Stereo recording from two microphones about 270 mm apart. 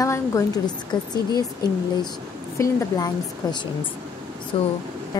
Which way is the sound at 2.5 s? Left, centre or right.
Centre.